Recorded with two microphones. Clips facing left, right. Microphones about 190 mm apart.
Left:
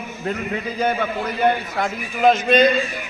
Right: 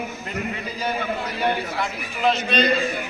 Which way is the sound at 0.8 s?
50° left (ahead or behind).